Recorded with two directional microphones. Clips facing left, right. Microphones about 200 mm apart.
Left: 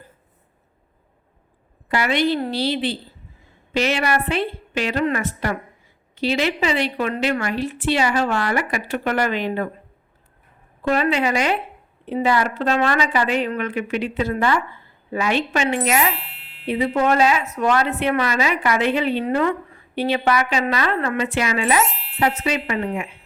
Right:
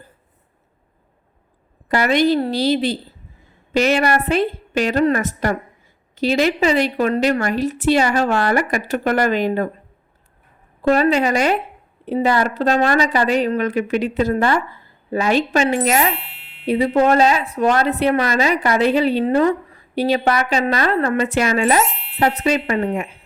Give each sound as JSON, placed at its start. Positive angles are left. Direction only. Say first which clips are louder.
{"t": 1.9, "sound": "a woman's voice", "louder": "right 4 dB", "side_deg": -45}
{"t": 10.8, "sound": "a woman's voice", "louder": "right 4 dB", "side_deg": -40}
{"t": 16.1, "sound": "music", "louder": "right 3 dB", "side_deg": 0}
{"t": 16.6, "sound": "a woman's voice", "louder": "right 4 dB", "side_deg": -40}
{"t": 21.8, "sound": "speech", "louder": "right 1 dB", "side_deg": 0}
{"t": 22.2, "sound": "a woman's voice", "louder": "right 3 dB", "side_deg": -40}